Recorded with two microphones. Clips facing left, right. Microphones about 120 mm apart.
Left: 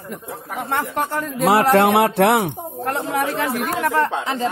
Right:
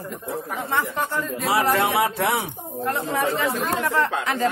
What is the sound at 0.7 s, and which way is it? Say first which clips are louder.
A man's voice: left 3 dB; 65° left (ahead or behind).